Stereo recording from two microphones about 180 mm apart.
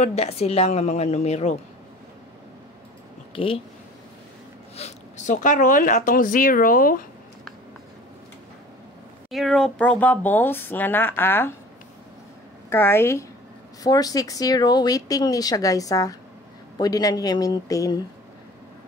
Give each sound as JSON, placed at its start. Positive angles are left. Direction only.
{"t": 0.0, "sound": "a woman's voice", "side_deg": 35}
{"t": 3.3, "sound": "a woman's voice", "side_deg": 30}
{"t": 4.7, "sound": "speech", "side_deg": 40}
{"t": 9.3, "sound": "speech", "side_deg": 0}
{"t": 12.6, "sound": "a woman's voice", "side_deg": 15}